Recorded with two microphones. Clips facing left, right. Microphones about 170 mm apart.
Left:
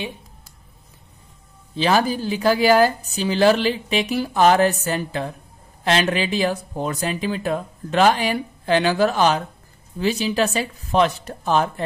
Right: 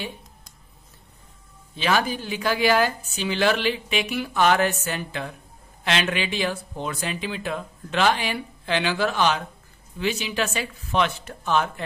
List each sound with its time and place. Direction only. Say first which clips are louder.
1.8 s speech: left 5 dB; 35° left (ahead or behind)